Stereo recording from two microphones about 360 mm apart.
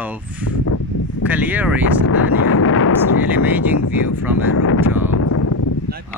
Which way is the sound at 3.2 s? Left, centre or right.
Centre.